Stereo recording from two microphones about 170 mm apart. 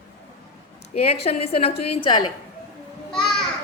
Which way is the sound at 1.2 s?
35° left (ahead or behind).